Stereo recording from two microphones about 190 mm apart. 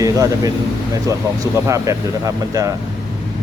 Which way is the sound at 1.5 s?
15° right (ahead or behind).